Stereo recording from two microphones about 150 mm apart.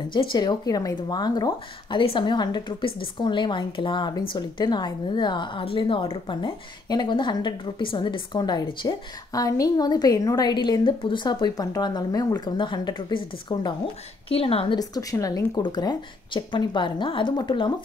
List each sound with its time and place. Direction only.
0.1 s a woman's voice: 30° left (ahead or behind)
14.8 s a woman's voice: 25° left (ahead or behind)